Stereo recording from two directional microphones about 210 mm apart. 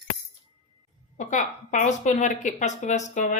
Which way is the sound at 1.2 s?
35° left (ahead or behind).